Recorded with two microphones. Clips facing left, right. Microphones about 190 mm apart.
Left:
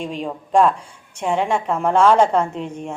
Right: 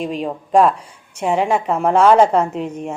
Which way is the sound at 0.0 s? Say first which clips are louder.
Right 3 dB; 5° right (ahead or behind).